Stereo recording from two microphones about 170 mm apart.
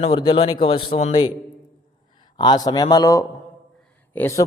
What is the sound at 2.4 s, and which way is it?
A man's voice, 25° left (ahead or behind).